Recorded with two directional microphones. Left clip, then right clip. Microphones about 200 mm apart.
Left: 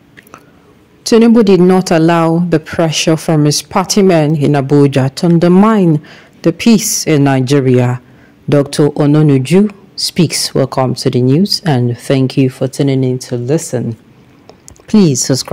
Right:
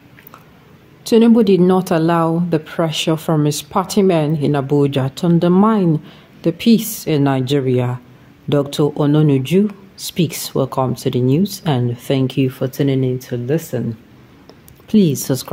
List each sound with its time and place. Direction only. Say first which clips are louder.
1.0 s speech: left 4 dB; 25° left (ahead or behind)